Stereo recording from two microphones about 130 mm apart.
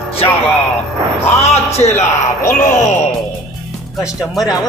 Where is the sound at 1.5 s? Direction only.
55° left (ahead or behind).